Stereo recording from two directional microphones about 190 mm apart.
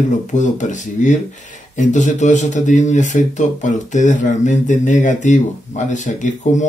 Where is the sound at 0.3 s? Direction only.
40° left (ahead or behind).